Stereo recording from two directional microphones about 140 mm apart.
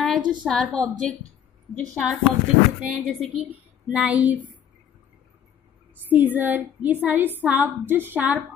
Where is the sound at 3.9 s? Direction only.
5° right (ahead or behind).